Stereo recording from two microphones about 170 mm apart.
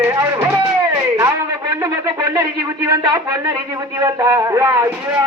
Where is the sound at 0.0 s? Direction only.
15° right (ahead or behind).